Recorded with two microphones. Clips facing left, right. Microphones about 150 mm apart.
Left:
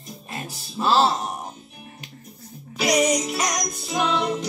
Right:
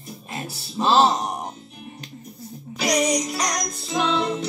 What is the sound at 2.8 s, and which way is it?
Music, centre (ahead or behind).